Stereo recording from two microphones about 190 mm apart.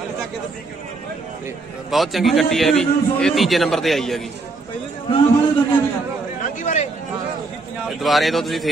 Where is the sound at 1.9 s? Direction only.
Centre (ahead or behind).